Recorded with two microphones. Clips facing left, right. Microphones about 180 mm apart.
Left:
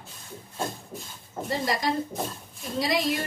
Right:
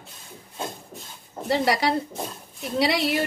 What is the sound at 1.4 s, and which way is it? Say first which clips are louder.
Speech: right 5 dB; 75° right (ahead or behind).